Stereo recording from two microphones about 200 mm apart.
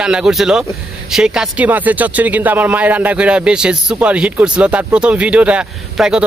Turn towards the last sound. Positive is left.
turn(degrees=-5)  # may be behind; listen again after turning